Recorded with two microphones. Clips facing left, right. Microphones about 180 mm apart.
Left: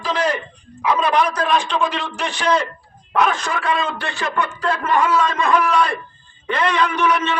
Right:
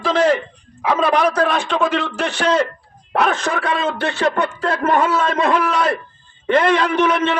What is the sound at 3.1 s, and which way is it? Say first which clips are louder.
A man's voice: right 1 dB; 65° right (ahead or behind).